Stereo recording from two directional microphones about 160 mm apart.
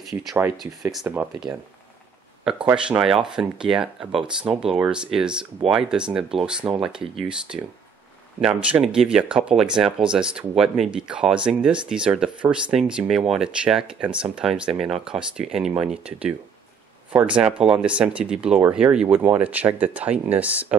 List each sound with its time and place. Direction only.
0.9 s speech: 10° right (ahead or behind)
2.7 s speech: 5° right (ahead or behind)
6.6 s speech: 30° right (ahead or behind)
7.2 s speech: 5° right (ahead or behind)
17.4 s speech: 5° right (ahead or behind)